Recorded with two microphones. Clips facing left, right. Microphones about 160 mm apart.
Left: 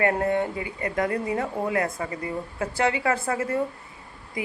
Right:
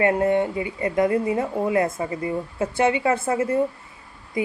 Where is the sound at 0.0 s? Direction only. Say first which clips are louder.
Right 4 dB; 20° right (ahead or behind).